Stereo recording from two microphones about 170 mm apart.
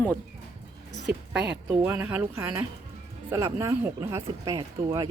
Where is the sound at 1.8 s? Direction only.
10° right (ahead or behind).